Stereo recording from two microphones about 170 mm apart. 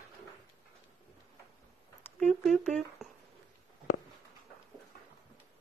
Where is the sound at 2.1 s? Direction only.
Centre (ahead or behind).